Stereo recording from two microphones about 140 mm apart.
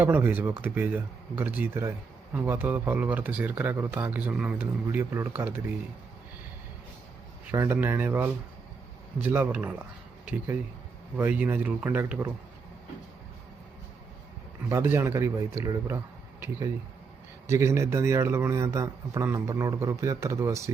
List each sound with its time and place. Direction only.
0.0 s speech: 15° right (ahead or behind)
7.5 s speech: 20° right (ahead or behind)
14.7 s a man's voice: 20° right (ahead or behind)
17.4 s a man's voice: 20° right (ahead or behind)